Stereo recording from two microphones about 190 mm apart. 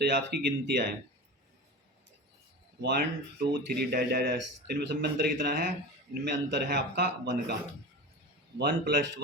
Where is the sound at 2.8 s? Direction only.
60° right (ahead or behind).